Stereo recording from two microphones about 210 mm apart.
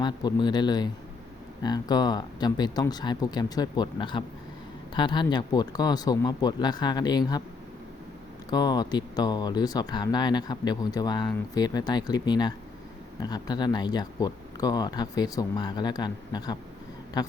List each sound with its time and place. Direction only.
0.0 s speech: 20° left (ahead or behind)
8.4 s speech: 20° left (ahead or behind)